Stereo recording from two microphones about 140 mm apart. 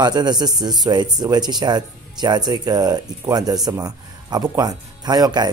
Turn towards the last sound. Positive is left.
turn(degrees=-30)  # may be behind; listen again after turning